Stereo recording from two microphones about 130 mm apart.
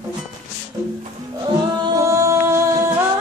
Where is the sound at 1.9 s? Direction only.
25° right (ahead or behind).